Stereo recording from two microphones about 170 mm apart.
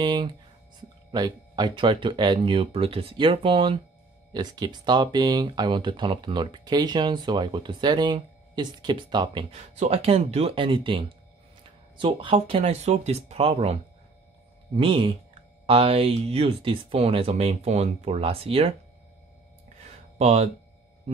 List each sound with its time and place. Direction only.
0.0 s speech: 25° right (ahead or behind)
12.0 s speech: 30° right (ahead or behind)
14.8 s speech: 30° right (ahead or behind)
19.8 s music: 40° right (ahead or behind)